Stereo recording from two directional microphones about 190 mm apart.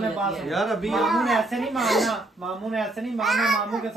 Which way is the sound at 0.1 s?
Centre (ahead or behind).